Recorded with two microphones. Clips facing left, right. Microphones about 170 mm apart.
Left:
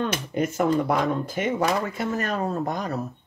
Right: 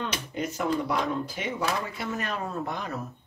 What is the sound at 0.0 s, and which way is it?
Speech, 50° left (ahead or behind).